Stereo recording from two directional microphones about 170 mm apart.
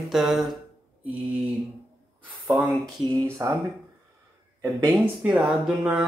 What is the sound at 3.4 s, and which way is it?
Speech, 15° right (ahead or behind).